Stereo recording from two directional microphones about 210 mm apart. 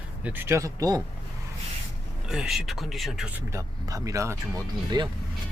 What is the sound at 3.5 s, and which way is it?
Speech, 15° right (ahead or behind).